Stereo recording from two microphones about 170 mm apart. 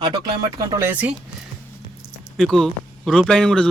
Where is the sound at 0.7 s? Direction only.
10° right (ahead or behind).